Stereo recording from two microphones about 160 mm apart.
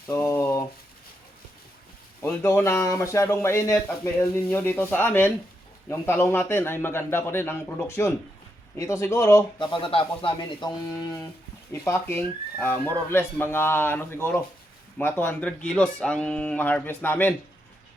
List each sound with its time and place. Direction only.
0.1 s a sound: 15° left (ahead or behind)
2.2 s speech: 15° left (ahead or behind)
9.7 s speech: 35° left (ahead or behind)
11.7 s speech: 15° left (ahead or behind)